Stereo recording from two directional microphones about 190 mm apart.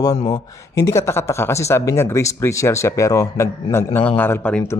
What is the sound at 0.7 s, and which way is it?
Speech, 15° left (ahead or behind).